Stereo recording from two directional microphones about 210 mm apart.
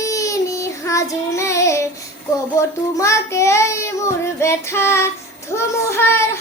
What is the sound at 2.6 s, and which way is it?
Speech, 15° left (ahead or behind).